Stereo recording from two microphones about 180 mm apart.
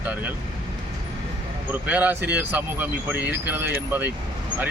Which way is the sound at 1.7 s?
10° right (ahead or behind).